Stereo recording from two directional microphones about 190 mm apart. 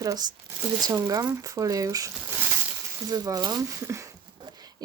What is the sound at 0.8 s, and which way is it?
Speech, 20° right (ahead or behind).